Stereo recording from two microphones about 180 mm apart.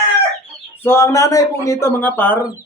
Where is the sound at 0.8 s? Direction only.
15° left (ahead or behind).